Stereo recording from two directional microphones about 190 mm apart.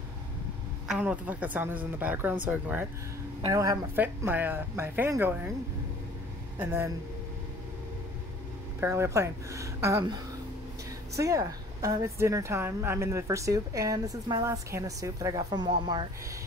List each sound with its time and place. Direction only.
0.8 s a woman's voice: 5° right (ahead or behind)
6.6 s a woman's voice: 15° right (ahead or behind)
8.8 s a woman's voice: 15° right (ahead or behind)